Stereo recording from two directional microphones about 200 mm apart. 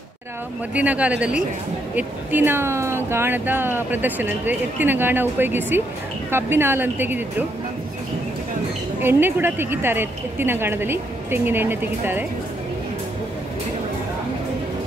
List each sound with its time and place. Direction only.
0.7 s speech: 5° right (ahead or behind)
9.0 s speech: 10° right (ahead or behind)